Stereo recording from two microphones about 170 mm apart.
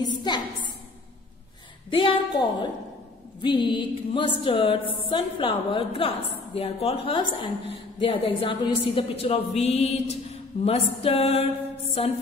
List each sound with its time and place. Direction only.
0.0 s a sound: 25° left (ahead or behind)
1.9 s music: 30° left (ahead or behind)
4.9 s a woman's voice: 30° left (ahead or behind)